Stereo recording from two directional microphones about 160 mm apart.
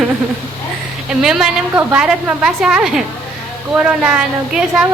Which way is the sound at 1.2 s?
5° right (ahead or behind).